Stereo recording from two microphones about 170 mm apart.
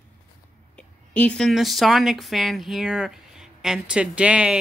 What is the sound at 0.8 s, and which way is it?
Speech, 5° left (ahead or behind).